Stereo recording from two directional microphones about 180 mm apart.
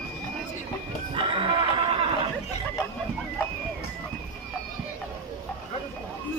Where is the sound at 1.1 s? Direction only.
30° right (ahead or behind).